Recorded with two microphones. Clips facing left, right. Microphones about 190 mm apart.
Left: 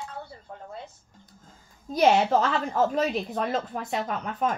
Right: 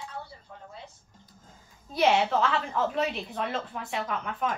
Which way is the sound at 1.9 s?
40° left (ahead or behind).